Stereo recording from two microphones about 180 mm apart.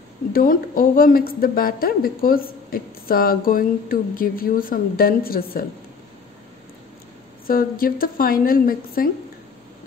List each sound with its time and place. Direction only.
0.3 s a woman's voice: 50° left (ahead or behind)
7.4 s a woman's voice: 55° left (ahead or behind)